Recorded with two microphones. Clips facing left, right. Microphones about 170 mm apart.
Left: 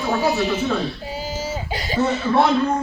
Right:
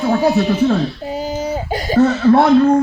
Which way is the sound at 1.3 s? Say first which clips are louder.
Right 6 dB; 55° right (ahead or behind).